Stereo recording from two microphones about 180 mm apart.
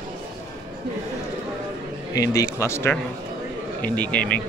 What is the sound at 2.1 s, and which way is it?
Speech, 20° left (ahead or behind).